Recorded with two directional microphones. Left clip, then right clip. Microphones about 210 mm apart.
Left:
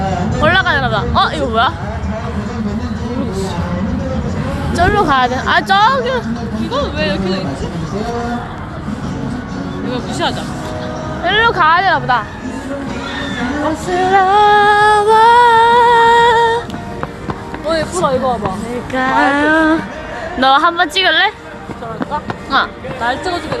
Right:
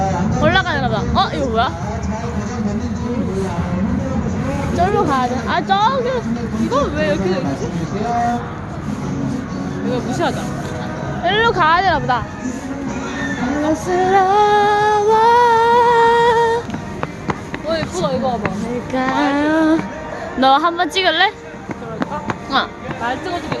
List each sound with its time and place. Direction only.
0.4 s speech: 10° right (ahead or behind)
4.7 s speech: 5° right (ahead or behind)
6.7 s speech: 45° right (ahead or behind)
9.9 s speech: 40° right (ahead or behind)
11.2 s speech: 15° right (ahead or behind)
14.1 s humming: 15° right (ahead or behind)
17.7 s speech: 35° left (ahead or behind)
18.9 s speech: 10° right (ahead or behind)
22.6 s speech: 10° right (ahead or behind)